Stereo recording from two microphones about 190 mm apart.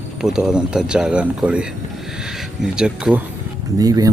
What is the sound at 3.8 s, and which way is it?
Speech, 20° right (ahead or behind).